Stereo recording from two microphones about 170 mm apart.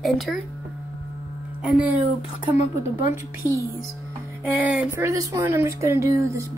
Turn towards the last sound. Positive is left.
turn(degrees=-15)  # may be behind; listen again after turning